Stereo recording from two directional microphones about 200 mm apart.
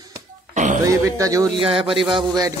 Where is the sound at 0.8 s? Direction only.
15° right (ahead or behind).